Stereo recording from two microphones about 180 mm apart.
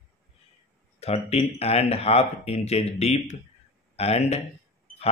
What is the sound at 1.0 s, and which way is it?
A man's voice, 35° left (ahead or behind).